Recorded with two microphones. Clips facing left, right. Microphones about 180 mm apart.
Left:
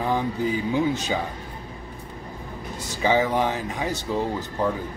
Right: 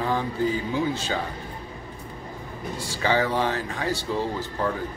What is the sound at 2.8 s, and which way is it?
Speech, 15° left (ahead or behind).